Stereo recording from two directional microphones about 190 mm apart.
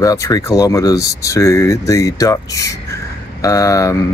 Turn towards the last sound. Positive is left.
turn(degrees=15)  # may be behind; listen again after turning